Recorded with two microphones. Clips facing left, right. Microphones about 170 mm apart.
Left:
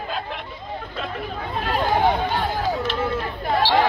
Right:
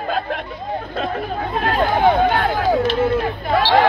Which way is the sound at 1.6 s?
60° right (ahead or behind).